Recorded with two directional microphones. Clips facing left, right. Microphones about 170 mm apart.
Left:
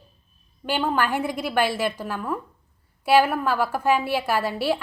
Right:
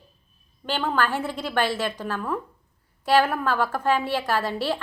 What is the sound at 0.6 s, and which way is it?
A woman's voice, 10° left (ahead or behind).